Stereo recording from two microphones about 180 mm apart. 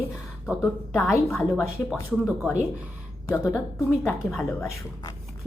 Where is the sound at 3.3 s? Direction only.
10° left (ahead or behind).